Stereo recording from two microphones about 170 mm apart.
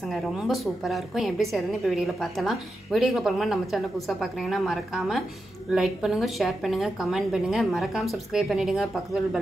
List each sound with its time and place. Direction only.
0.0 s a woman's voice: centre (ahead or behind)